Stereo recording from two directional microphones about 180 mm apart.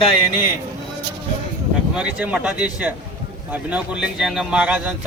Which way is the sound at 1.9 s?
5° right (ahead or behind).